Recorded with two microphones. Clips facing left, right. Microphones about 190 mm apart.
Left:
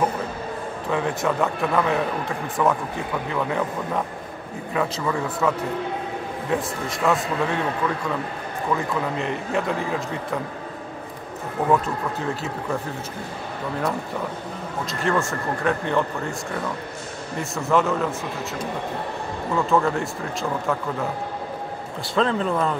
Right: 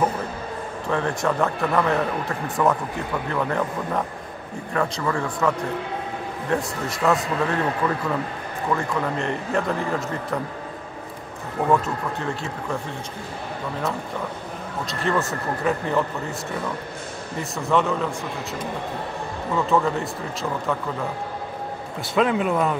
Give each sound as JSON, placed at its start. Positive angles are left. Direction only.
{"t": 0.8, "sound": "a man's voice", "side_deg": 0}
{"t": 6.5, "sound": "a man's voice", "side_deg": 0}
{"t": 8.7, "sound": "a man's voice", "side_deg": 0}
{"t": 11.7, "sound": "a man's voice", "side_deg": 0}
{"t": 14.9, "sound": "a man's voice", "side_deg": 0}
{"t": 17.4, "sound": "a man's voice", "side_deg": 0}
{"t": 19.5, "sound": "a man's voice", "side_deg": 0}
{"t": 22.1, "sound": "a man's voice", "side_deg": -10}